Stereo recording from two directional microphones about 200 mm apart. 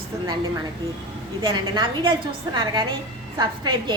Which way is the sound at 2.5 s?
20° right (ahead or behind).